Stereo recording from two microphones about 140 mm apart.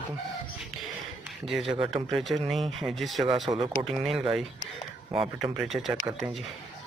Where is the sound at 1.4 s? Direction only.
Centre (ahead or behind).